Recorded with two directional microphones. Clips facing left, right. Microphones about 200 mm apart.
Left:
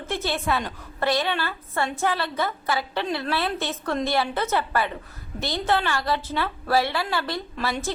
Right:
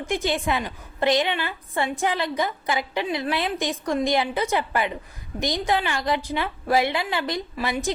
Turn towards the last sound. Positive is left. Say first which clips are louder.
# right 1 dB
turn(degrees=-15)  # may be behind; listen again after turning